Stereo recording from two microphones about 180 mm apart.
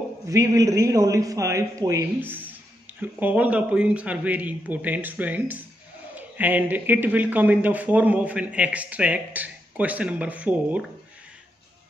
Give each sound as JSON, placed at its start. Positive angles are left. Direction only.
{"t": 0.3, "sound": "a man's voice", "side_deg": -20}